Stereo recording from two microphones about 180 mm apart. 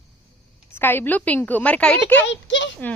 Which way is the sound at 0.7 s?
10° left (ahead or behind).